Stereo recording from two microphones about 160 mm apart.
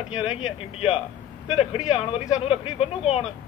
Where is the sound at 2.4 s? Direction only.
40° left (ahead or behind).